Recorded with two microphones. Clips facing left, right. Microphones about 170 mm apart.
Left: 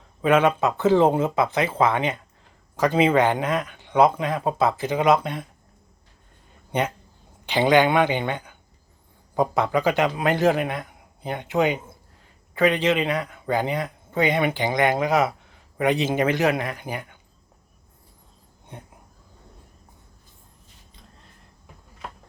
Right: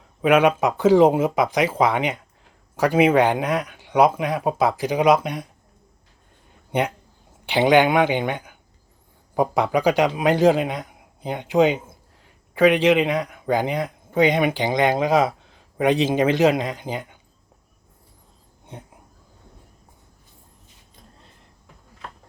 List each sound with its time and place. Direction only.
0.2 s speech: 15° right (ahead or behind)
6.7 s speech: 15° right (ahead or behind)